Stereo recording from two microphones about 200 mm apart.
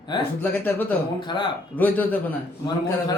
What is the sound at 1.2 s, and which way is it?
Speech, 25° left (ahead or behind).